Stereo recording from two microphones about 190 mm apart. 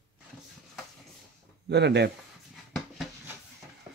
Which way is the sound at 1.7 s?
60° right (ahead or behind).